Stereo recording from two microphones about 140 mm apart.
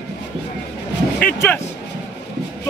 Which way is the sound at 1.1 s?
15° left (ahead or behind).